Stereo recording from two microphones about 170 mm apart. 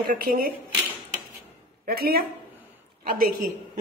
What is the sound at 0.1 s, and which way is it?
Speech, 60° right (ahead or behind).